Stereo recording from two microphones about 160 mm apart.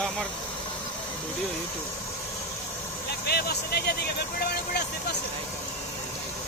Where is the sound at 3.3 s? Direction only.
80° left.